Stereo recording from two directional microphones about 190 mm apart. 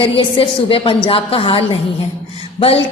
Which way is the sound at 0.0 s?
30° left (ahead or behind).